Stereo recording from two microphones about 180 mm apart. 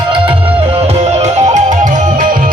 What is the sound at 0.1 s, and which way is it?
Music, 30° right (ahead or behind).